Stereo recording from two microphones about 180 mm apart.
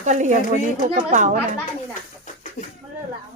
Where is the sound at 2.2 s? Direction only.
45° left (ahead or behind).